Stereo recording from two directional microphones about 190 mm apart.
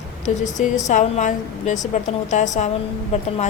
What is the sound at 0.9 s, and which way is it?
Speech, 40° left (ahead or behind).